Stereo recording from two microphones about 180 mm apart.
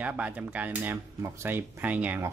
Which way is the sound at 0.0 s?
10° right (ahead or behind).